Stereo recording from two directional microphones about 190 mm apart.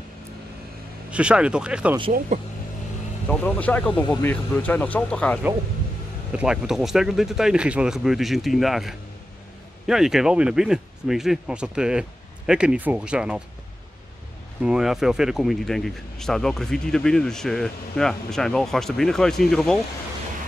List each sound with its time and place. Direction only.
1.1 s speech: 5° right (ahead or behind)
2.1 s speech: 40° right (ahead or behind)
3.3 s speech: 5° left (ahead or behind)
6.3 s speech: 5° right (ahead or behind)
14.6 s speech: 5° right (ahead or behind)